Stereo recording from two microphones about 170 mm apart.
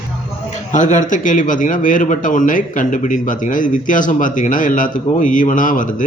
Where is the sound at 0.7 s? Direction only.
50° left (ahead or behind).